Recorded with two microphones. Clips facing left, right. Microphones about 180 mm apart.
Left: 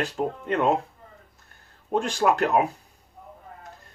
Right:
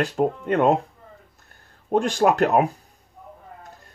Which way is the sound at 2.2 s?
40° right (ahead or behind).